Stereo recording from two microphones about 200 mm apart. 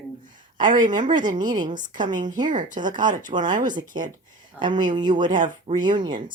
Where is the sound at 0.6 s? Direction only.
40° right (ahead or behind).